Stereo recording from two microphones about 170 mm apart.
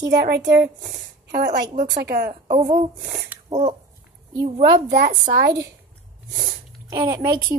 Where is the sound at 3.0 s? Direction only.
20° right (ahead or behind).